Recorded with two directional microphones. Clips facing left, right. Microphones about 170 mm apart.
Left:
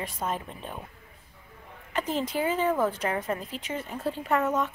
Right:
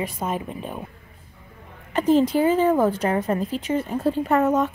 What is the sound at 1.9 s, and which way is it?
Speech, 35° right (ahead or behind).